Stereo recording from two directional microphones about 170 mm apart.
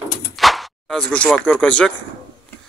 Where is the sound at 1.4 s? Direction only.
5° left (ahead or behind).